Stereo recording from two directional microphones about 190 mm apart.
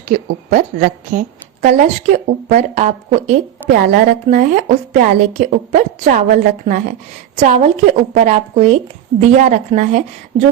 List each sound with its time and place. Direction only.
0.1 s a woman's voice: 50° right (ahead or behind)
1.6 s a woman's voice: 40° right (ahead or behind)